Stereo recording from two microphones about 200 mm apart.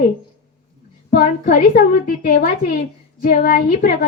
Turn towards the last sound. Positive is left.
turn(degrees=45)  # may be behind; listen again after turning